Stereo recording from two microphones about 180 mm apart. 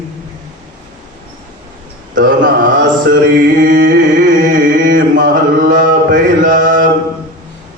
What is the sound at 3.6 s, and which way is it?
Carnatic music, 50° right (ahead or behind).